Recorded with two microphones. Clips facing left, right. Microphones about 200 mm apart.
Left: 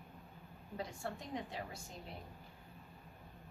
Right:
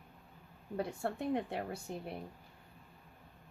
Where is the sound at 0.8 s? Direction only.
60° right (ahead or behind).